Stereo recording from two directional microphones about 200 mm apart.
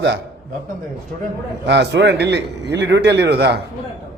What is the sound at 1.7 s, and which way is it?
A man's voice, 60° right (ahead or behind).